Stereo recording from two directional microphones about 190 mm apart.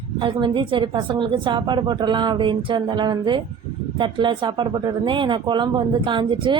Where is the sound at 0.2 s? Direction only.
25° right (ahead or behind).